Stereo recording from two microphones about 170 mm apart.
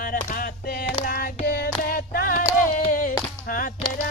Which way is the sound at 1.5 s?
60° left (ahead or behind).